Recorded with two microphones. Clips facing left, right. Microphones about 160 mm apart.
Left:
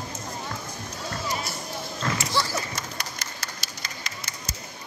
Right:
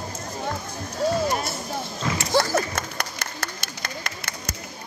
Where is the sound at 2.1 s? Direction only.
50° right (ahead or behind).